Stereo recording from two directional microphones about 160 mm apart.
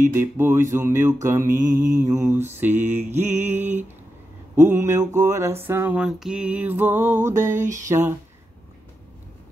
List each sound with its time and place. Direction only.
0.0 s mantra: 15° right (ahead or behind)
1.5 s mantra: 55° right (ahead or behind)
2.0 s mantra: 20° right (ahead or behind)